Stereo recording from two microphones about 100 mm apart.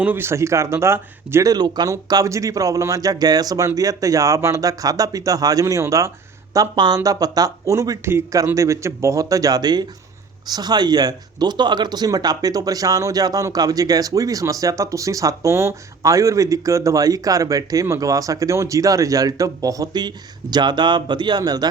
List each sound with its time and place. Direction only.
0.0 s speech: 20° right (ahead or behind)
1.5 s speech: 45° right (ahead or behind)